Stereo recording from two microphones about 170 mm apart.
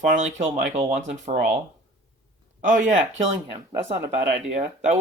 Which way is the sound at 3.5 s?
30° right (ahead or behind).